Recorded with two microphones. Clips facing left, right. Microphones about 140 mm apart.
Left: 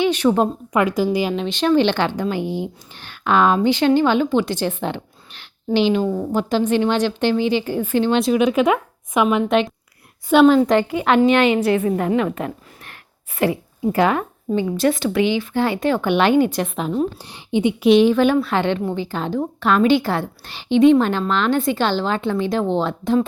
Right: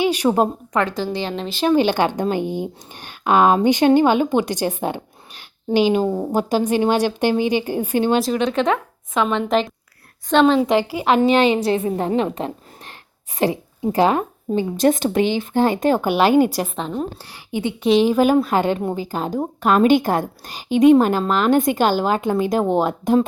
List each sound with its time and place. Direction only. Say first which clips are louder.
0.0 s a woman's voice: even; 10° right (ahead or behind)
0.7 s speech: left 3 dB; 10° left (ahead or behind); by 2.2 s 15° right (ahead or behind)
2.4 s speech: even; 15° left (ahead or behind)
3.0 s a woman's voice: right 1 dB; 15° right (ahead or behind)
8.2 s speech: left 3 dB; 5° left (ahead or behind)
10.6 s speech: left 1 dB; 5° right (ahead or behind)
10.9 s a woman's voice: even; 30° right (ahead or behind)
16.5 s a woman's voice: left 1 dB; 5° right (ahead or behind)
16.7 s speech: left 4 dB; 5° left (ahead or behind)
17.2 s a woman's voice: left 5 dB; 20° left (ahead or behind)
18.4 s a woman's voice: right 1 dB; 40° right (ahead or behind)
21.3 s a woman's voice: right 3 dB; 10° right (ahead or behind)